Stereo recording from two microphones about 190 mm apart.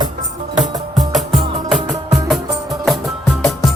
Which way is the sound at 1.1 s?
Centre (ahead or behind).